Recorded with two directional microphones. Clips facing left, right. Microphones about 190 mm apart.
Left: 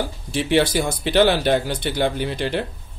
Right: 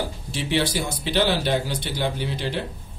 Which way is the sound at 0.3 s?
55° left (ahead or behind).